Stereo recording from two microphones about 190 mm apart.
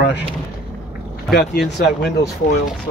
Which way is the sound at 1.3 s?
Centre (ahead or behind).